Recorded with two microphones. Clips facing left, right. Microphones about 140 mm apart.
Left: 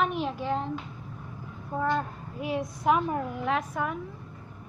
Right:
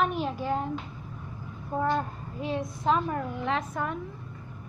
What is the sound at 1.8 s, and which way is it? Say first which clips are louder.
Speech: even; 10° right (ahead or behind).